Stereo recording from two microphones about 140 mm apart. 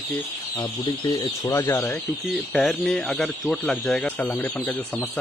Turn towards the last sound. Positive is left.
turn(degrees=5)  # may be behind; listen again after turning